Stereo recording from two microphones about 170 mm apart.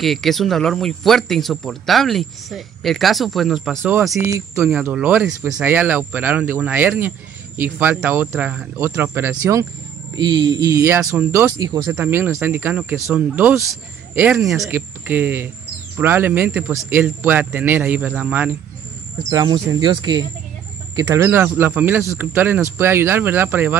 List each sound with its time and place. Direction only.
0.0 s speech: centre (ahead or behind)
11.5 s speech: 25° right (ahead or behind)
19.3 s speech: 20° right (ahead or behind)